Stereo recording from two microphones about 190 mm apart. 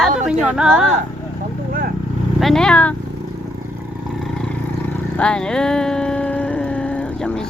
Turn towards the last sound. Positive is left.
turn(degrees=5)  # may be behind; listen again after turning